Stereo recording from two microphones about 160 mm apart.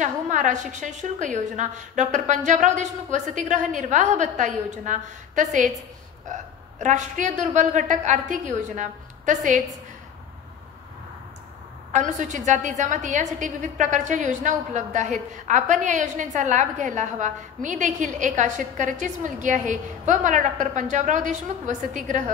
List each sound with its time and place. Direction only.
0.0 s a woman's voice: 50° right (ahead or behind)
11.9 s a woman's voice: 50° right (ahead or behind)